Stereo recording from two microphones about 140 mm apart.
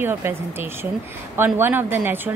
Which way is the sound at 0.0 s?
15° right (ahead or behind).